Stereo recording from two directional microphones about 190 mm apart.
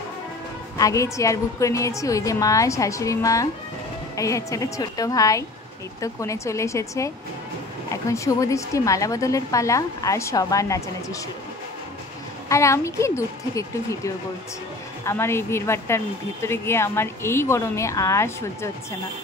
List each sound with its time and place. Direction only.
0.7 s a woman's voice: 15° left (ahead or behind)
12.4 s a woman's voice: 15° left (ahead or behind)